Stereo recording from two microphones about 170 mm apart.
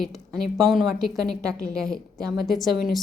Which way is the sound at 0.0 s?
Centre (ahead or behind).